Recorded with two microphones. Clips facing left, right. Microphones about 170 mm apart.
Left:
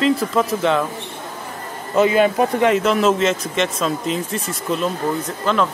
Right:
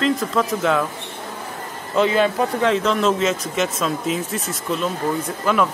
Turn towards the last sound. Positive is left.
turn(degrees=-10)  # may be behind; listen again after turning